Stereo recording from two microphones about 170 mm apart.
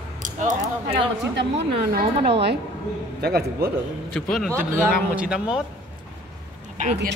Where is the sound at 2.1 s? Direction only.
35° right (ahead or behind).